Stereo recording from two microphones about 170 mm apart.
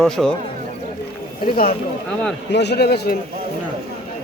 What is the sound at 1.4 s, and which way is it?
Speech, 60° left (ahead or behind).